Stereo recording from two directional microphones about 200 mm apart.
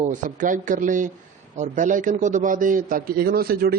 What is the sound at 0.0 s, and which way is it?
Speech, 40° right (ahead or behind).